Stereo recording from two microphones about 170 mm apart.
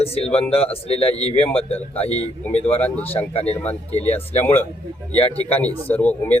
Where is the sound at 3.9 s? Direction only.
40° left (ahead or behind).